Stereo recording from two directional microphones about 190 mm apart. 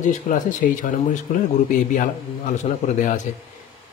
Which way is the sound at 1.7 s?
45° left (ahead or behind).